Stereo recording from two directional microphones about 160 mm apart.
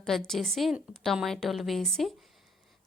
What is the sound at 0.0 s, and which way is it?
A woman's voice, centre (ahead or behind).